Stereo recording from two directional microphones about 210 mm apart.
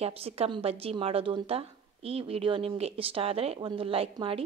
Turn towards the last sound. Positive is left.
turn(degrees=-25)  # may be behind; listen again after turning